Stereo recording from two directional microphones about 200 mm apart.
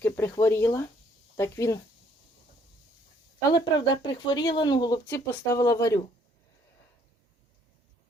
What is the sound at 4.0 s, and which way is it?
Speech, 20° left (ahead or behind).